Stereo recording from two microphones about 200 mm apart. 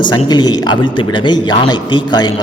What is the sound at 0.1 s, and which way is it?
A man's voice, 20° left (ahead or behind).